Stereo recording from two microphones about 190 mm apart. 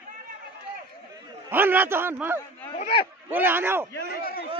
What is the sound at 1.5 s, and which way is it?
Speech, 10° right (ahead or behind).